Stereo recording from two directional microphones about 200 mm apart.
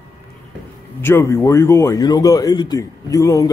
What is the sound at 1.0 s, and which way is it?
A man's voice, 10° left (ahead or behind).